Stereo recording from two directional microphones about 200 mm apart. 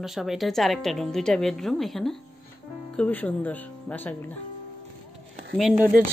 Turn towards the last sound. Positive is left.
turn(degrees=0)  # may be behind; listen again after turning